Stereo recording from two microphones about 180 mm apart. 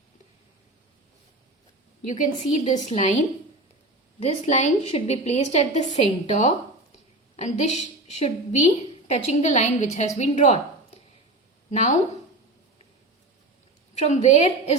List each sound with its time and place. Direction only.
2.0 s a woman's voice: 40° left (ahead or behind)
13.9 s a woman's voice: 40° left (ahead or behind)